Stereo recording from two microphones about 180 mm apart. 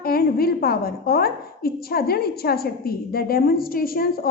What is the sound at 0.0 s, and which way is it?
A woman's voice, 55° left (ahead or behind).